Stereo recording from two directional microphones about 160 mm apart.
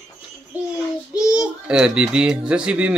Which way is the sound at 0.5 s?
10° right (ahead or behind).